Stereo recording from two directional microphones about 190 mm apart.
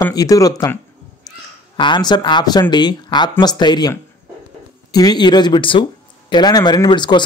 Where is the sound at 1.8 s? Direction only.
25° left (ahead or behind).